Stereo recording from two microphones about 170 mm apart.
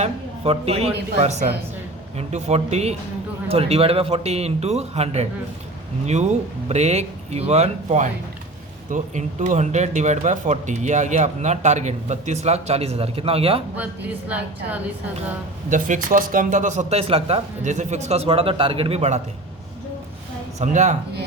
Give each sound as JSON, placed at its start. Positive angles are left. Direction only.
{"t": 0.0, "sound": "a man's voice", "side_deg": -35}
{"t": 6.7, "sound": "speech", "side_deg": -40}
{"t": 14.3, "sound": "a woman's voice", "side_deg": -10}
{"t": 15.7, "sound": "speech", "side_deg": -50}
{"t": 20.6, "sound": "speech", "side_deg": -45}